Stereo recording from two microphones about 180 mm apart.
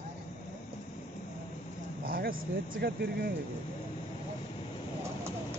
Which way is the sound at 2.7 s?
60° right (ahead or behind).